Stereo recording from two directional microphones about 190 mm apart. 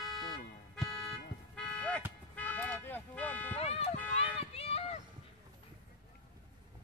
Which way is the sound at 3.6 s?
30° left (ahead or behind).